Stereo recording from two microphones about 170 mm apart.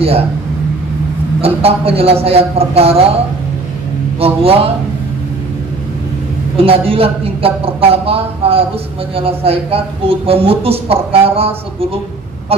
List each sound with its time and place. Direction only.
1.4 s speech: 35° right (ahead or behind)
4.2 s speech: 35° right (ahead or behind)
6.5 s speech: 35° right (ahead or behind)